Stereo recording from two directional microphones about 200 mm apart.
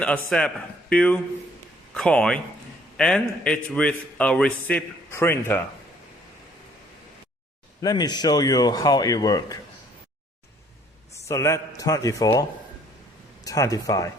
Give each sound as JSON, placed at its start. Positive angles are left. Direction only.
{"t": 0.0, "sound": "a man's voice", "side_deg": 5}
{"t": 7.8, "sound": "speech", "side_deg": 20}
{"t": 11.3, "sound": "speech", "side_deg": 15}